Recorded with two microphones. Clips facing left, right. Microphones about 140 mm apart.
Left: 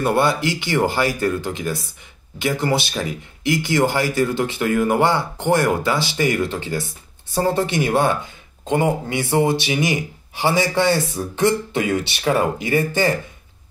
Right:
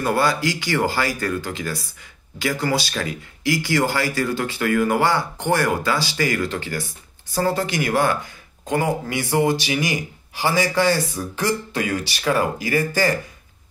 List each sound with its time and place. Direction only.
0.0 s speech: 25° left (ahead or behind)